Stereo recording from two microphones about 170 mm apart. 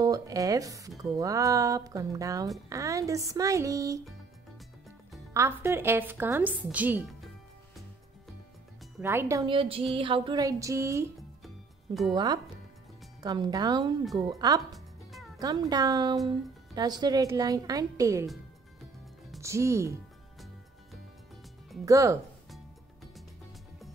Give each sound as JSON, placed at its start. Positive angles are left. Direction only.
{"t": 0.0, "sound": "speech", "side_deg": -20}
{"t": 5.3, "sound": "a woman's voice", "side_deg": -15}
{"t": 9.0, "sound": "a woman's voice", "side_deg": -15}
{"t": 9.5, "sound": "a sound", "side_deg": -35}
{"t": 9.9, "sound": "speech", "side_deg": -30}
{"t": 11.4, "sound": "music", "side_deg": 0}
{"t": 12.1, "sound": "speech", "side_deg": -25}
{"t": 14.6, "sound": "music", "side_deg": 0}
{"t": 15.3, "sound": "music", "side_deg": -20}
{"t": 15.7, "sound": "speech", "side_deg": -20}
{"t": 19.4, "sound": "a woman's voice", "side_deg": -15}
{"t": 21.8, "sound": "speech", "side_deg": -20}